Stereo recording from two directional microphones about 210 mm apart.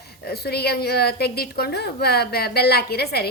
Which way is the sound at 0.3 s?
50° left (ahead or behind).